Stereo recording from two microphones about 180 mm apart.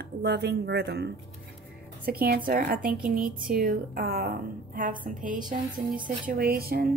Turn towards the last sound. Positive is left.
turn(degrees=-55)  # may be behind; listen again after turning